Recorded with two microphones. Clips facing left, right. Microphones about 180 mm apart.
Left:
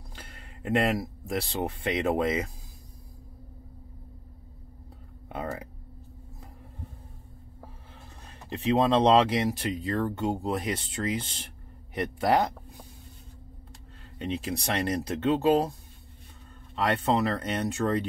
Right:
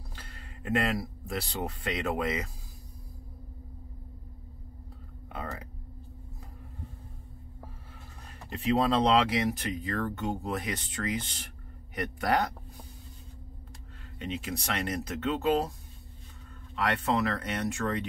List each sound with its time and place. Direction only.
0.1 s speech: 25° left (ahead or behind)
8.5 s speech: 25° left (ahead or behind)
14.1 s speech: 30° left (ahead or behind)
16.7 s speech: 30° left (ahead or behind)